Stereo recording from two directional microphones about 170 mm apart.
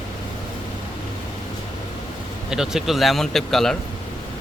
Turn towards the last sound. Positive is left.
turn(degrees=0)  # may be behind; listen again after turning